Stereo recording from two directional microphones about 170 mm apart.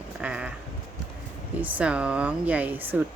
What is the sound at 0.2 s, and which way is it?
Sheep, 5° right (ahead or behind).